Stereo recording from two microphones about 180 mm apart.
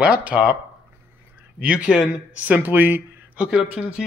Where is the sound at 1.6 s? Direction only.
5° right (ahead or behind).